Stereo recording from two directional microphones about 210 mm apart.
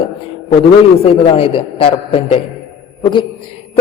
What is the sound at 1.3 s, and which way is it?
A man's voice, 25° left (ahead or behind).